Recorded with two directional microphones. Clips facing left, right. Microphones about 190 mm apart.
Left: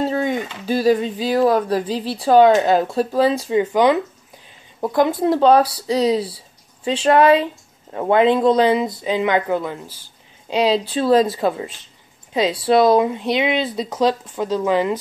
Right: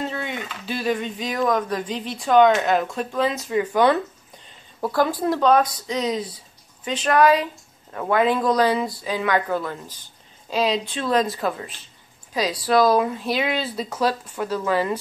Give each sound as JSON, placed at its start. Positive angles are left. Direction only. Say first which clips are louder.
{"t": 0.0, "sound": "a sound", "louder": "left 8 dB", "side_deg": 40}
{"t": 0.7, "sound": "speech", "louder": "left 8 dB", "side_deg": 40}
{"t": 3.7, "sound": "speech", "louder": "even", "side_deg": 15}
{"t": 10.5, "sound": "speech", "louder": "left 5 dB", "side_deg": 30}